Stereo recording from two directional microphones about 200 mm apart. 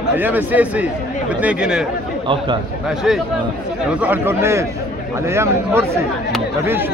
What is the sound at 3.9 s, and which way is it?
Speech, 10° right (ahead or behind).